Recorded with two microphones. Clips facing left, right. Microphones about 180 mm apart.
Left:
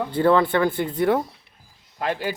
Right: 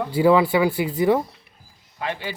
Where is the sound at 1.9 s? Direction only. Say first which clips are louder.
Left 3 dB; 45° left (ahead or behind).